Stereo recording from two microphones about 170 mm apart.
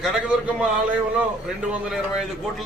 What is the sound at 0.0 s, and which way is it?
Speech, 5° right (ahead or behind).